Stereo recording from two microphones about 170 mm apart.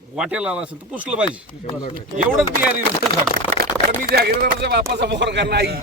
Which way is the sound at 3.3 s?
65° right (ahead or behind).